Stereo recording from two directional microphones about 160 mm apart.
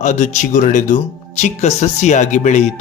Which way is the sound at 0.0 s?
50° left (ahead or behind).